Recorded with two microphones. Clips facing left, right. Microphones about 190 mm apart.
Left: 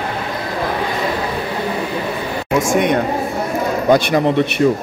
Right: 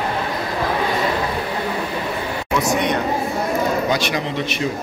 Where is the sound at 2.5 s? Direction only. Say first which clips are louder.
Left 5 dB; 50° left (ahead or behind).